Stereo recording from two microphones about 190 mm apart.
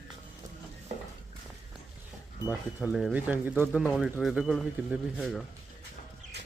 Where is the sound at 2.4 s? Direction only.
10° right (ahead or behind).